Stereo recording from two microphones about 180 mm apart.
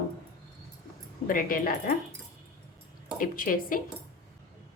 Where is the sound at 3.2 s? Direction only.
50° left (ahead or behind).